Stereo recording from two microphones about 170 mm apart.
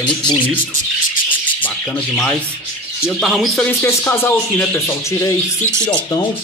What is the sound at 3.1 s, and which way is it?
Speech, centre (ahead or behind).